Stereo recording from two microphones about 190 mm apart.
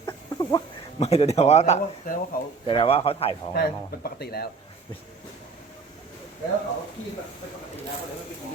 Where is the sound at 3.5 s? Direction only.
55° left (ahead or behind).